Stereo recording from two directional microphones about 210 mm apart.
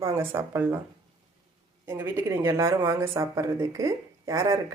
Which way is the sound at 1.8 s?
10° right (ahead or behind).